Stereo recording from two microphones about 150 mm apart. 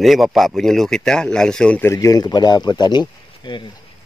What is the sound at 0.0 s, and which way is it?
Speech, centre (ahead or behind).